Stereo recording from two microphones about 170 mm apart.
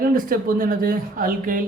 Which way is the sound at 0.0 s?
55° right (ahead or behind).